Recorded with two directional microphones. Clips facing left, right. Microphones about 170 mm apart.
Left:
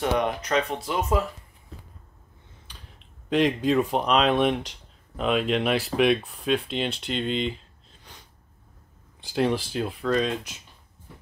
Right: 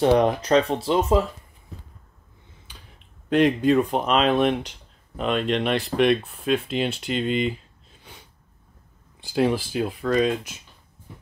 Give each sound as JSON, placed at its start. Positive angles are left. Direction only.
{"t": 0.0, "sound": "speech", "side_deg": -30}
{"t": 3.3, "sound": "speech", "side_deg": 0}
{"t": 9.2, "sound": "speech", "side_deg": 0}